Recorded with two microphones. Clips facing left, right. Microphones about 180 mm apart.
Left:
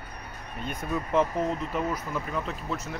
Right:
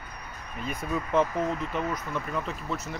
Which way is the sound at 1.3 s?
30° left (ahead or behind).